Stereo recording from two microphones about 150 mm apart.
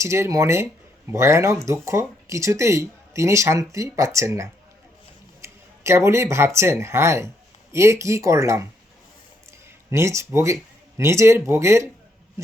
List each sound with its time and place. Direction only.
0.0 s speech: 20° right (ahead or behind)
9.9 s speech: 20° right (ahead or behind)